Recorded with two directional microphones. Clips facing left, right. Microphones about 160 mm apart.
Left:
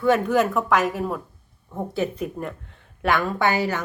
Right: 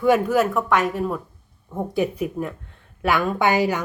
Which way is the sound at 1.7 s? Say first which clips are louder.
Right 3 dB; 15° right (ahead or behind).